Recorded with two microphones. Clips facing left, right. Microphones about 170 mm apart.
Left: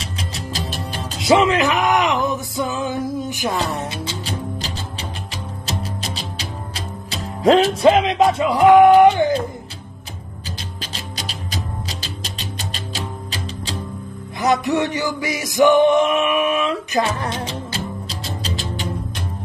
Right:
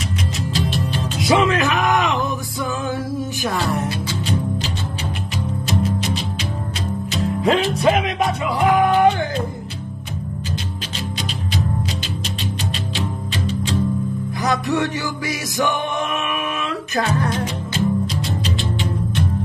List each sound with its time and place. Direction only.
0.6 s music: 40° left (ahead or behind)
1.2 s music: 20° left (ahead or behind)
5.7 s music: 35° left (ahead or behind)
12.9 s music: 35° left (ahead or behind)
14.4 s music: 20° left (ahead or behind)
18.0 s music: 35° left (ahead or behind)